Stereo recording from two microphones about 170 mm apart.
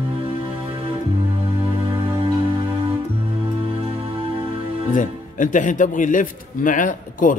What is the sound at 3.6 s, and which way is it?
Music, 30° right (ahead or behind).